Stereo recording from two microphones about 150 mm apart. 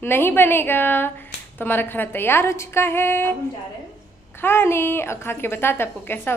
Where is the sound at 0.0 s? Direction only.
15° left (ahead or behind).